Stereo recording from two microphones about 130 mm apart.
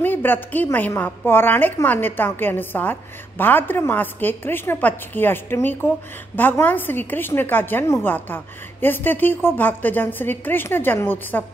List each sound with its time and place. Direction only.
0.0 s a woman's voice: 15° left (ahead or behind)